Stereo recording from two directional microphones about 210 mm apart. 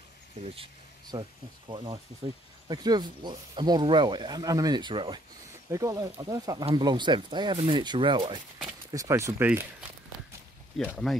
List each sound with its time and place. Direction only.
1.1 s speech: 20° right (ahead or behind)
2.7 s speech: 20° right (ahead or behind)
10.9 s speech: centre (ahead or behind)